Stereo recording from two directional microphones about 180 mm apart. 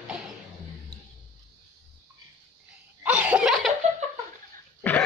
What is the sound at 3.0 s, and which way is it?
Laughter, 10° right (ahead or behind).